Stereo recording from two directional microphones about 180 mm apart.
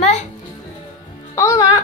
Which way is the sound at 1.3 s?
15° left (ahead or behind).